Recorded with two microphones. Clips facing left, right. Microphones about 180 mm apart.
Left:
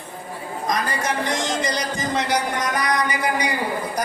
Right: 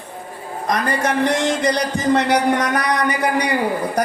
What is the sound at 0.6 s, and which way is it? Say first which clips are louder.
Speech: right 4 dB; 65° right (ahead or behind).